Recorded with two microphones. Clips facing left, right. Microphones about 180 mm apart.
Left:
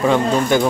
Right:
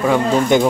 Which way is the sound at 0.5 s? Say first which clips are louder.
Right 3 dB; 20° right (ahead or behind).